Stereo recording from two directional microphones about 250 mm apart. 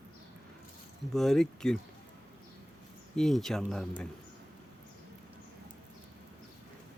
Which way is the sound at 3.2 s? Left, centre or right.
Centre.